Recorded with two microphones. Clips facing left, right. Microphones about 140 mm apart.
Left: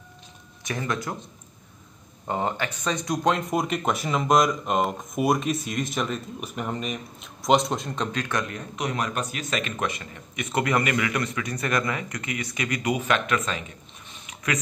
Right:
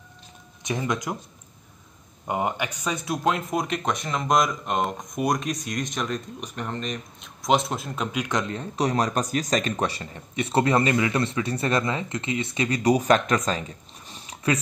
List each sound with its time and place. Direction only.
0.7 s speech: 20° right (ahead or behind)
2.2 s speech: 15° right (ahead or behind); by 14.6 s 30° right (ahead or behind)